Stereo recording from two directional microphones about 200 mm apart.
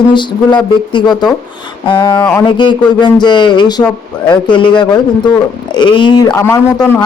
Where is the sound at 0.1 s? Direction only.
25° left (ahead or behind).